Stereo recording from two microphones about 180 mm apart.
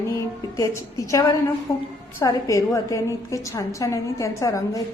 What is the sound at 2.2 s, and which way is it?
A woman's voice, 20° left (ahead or behind).